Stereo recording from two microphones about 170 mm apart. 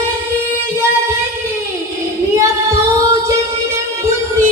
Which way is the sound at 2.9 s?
20° right (ahead or behind).